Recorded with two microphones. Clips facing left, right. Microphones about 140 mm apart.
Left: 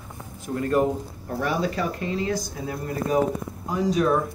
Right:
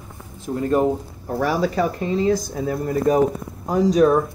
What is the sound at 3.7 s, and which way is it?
Speech, 40° right (ahead or behind).